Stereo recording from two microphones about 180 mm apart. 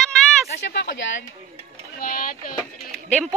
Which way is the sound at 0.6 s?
70° left (ahead or behind).